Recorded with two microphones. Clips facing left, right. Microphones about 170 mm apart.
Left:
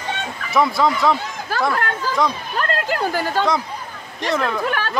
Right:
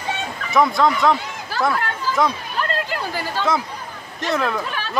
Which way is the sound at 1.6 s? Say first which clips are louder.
Even; centre (ahead or behind).